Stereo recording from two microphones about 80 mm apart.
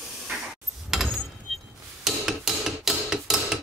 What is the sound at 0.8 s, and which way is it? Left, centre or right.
Door, centre.